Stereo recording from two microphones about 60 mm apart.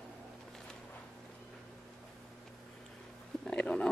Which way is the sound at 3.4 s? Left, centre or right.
Centre.